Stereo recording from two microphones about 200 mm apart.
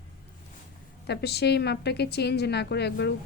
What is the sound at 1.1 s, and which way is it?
Speech, 55° left (ahead or behind).